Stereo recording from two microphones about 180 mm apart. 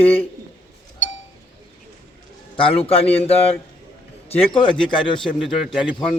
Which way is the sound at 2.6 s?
30° left (ahead or behind).